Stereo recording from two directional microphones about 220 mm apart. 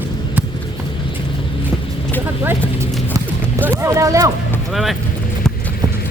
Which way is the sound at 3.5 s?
10° right (ahead or behind).